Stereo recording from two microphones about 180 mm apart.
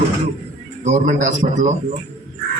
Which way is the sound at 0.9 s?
40° right (ahead or behind).